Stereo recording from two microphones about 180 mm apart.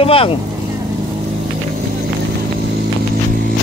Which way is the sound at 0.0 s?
30° left (ahead or behind).